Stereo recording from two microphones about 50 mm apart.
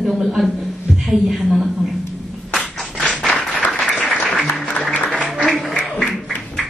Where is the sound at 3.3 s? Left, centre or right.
Left.